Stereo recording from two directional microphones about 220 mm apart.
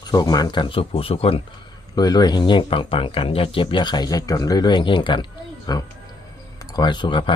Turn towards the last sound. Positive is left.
turn(degrees=20)  # may be behind; listen again after turning